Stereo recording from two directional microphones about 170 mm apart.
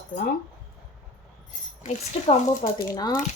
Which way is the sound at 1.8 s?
40° left (ahead or behind).